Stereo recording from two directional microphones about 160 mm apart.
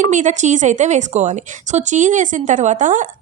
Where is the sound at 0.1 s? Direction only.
50° right (ahead or behind).